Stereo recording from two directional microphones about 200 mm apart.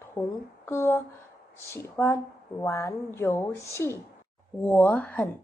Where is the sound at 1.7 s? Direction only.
15° left (ahead or behind).